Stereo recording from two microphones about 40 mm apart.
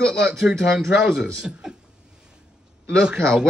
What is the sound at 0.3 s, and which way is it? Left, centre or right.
A man's voice, centre.